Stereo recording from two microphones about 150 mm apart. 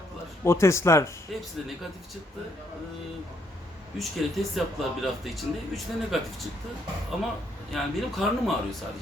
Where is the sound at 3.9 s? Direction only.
Centre (ahead or behind).